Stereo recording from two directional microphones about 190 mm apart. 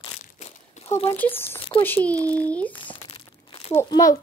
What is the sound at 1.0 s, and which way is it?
Speech, 10° left (ahead or behind).